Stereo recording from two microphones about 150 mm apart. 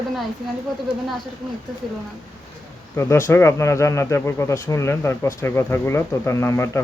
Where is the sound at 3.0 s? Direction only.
15° left (ahead or behind).